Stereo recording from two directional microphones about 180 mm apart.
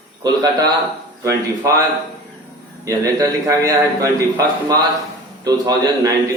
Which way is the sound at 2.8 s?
20° right (ahead or behind).